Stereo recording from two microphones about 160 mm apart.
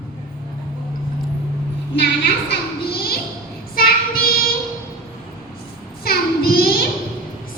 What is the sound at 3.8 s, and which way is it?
Child singing, 65° left (ahead or behind).